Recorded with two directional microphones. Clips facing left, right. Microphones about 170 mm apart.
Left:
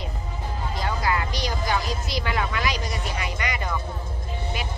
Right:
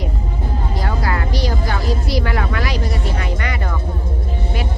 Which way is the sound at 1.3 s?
20° left (ahead or behind).